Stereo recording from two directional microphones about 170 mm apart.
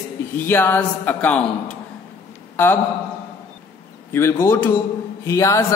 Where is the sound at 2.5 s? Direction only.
10° left (ahead or behind).